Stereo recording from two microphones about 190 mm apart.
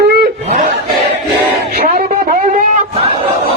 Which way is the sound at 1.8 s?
50° right (ahead or behind).